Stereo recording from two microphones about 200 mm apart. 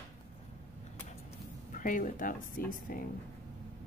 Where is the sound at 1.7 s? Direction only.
45° left (ahead or behind).